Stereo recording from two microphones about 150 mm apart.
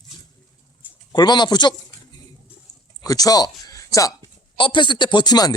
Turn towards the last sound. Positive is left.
turn(degrees=25)  # may be behind; listen again after turning